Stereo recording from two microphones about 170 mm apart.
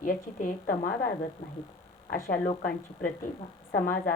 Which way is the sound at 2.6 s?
60° left (ahead or behind).